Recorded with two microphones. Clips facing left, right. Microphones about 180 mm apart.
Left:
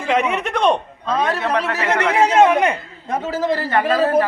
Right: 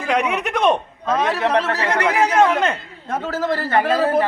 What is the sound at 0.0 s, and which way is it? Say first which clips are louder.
A man's voice: left 1 dB; centre (ahead or behind).